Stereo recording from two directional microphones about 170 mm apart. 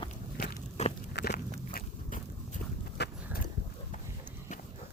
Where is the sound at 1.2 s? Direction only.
85° left.